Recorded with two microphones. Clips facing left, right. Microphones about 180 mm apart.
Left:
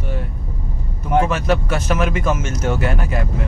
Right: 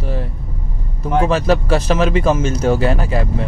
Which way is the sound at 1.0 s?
35° right (ahead or behind).